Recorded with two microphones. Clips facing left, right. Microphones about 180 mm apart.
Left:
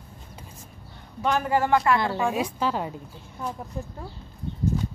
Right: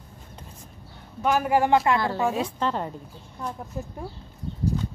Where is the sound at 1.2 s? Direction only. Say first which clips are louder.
Right 2 dB; 10° right (ahead or behind).